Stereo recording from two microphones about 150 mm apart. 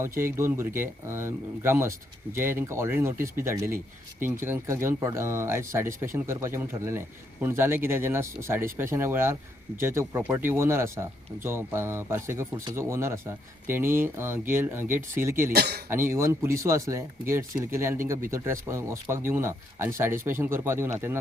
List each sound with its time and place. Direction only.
0.2 s speech: 15° right (ahead or behind)
15.5 s speech: 90° right
15.9 s speech: 15° right (ahead or behind)